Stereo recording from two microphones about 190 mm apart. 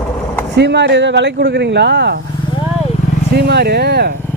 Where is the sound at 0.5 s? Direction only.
65° right (ahead or behind).